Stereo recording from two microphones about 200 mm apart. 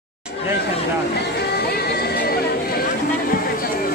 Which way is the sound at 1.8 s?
50° left (ahead or behind).